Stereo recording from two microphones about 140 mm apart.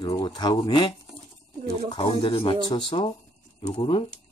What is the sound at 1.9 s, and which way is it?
Speech, 35° left (ahead or behind).